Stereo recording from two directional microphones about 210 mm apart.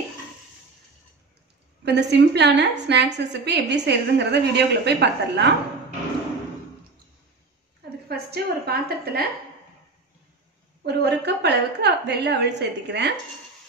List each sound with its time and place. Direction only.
1.9 s a woman's voice: 55° right (ahead or behind)
8.1 s a woman's voice: 50° right (ahead or behind)
10.9 s a woman's voice: 55° right (ahead or behind)